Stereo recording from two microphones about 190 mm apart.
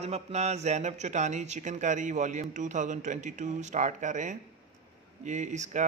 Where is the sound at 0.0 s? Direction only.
35° right (ahead or behind).